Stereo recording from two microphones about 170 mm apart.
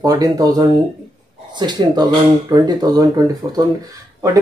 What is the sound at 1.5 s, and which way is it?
Speech, 25° right (ahead or behind).